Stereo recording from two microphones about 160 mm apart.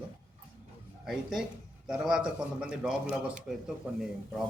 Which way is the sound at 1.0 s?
Centre (ahead or behind).